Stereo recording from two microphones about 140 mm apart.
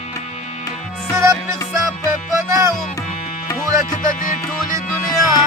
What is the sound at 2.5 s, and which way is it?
Music, 20° right (ahead or behind).